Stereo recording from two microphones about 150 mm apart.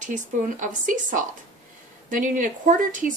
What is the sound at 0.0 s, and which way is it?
A woman's voice, 55° right (ahead or behind).